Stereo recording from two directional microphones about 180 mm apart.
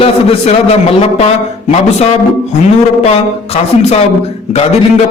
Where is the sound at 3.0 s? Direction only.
35° left (ahead or behind).